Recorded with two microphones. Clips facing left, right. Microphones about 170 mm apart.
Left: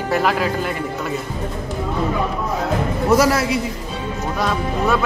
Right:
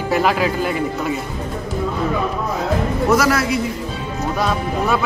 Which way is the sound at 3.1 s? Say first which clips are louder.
Left 2 dB; 25° left (ahead or behind).